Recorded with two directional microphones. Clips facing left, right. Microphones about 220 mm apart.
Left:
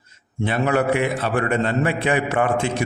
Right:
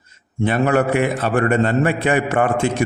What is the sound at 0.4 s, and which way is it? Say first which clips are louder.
A man's voice: right 3 dB; 50° right (ahead or behind).